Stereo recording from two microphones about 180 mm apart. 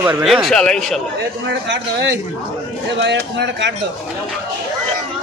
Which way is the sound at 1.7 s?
75° right (ahead or behind).